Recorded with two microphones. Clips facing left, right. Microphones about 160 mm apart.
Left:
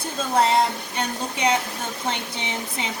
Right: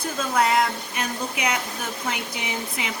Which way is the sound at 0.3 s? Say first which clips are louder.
Left 2 dB; 30° left (ahead or behind).